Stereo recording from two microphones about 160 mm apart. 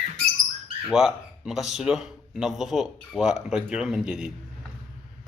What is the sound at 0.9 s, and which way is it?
Speech, 5° right (ahead or behind).